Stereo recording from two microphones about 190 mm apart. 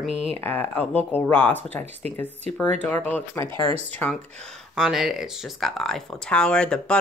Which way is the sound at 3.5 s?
30° right (ahead or behind).